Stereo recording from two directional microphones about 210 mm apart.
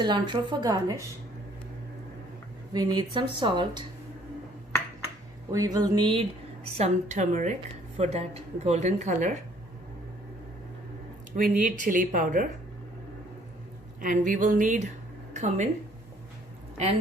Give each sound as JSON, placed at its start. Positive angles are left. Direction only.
{"t": 0.0, "sound": "speech", "side_deg": -20}
{"t": 2.7, "sound": "speech", "side_deg": -20}
{"t": 5.5, "sound": "speech", "side_deg": -15}
{"t": 6.7, "sound": "speech", "side_deg": -30}
{"t": 11.3, "sound": "speech", "side_deg": -40}
{"t": 14.0, "sound": "speech", "side_deg": -40}
{"t": 15.3, "sound": "a sound", "side_deg": -35}